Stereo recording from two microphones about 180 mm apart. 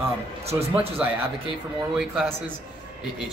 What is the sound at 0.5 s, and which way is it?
Speech, 20° right (ahead or behind).